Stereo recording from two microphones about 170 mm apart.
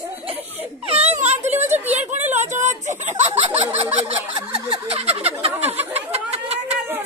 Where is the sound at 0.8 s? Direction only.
35° right (ahead or behind).